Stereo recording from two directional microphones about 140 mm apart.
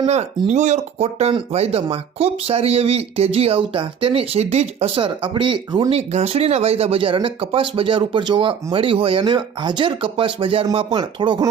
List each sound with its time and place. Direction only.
0.0 s speech: 50° right (ahead or behind); by 11.4 s 35° right (ahead or behind)